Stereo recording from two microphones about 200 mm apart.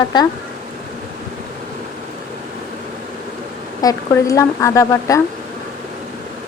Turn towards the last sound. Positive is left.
turn(degrees=15)  # may be behind; listen again after turning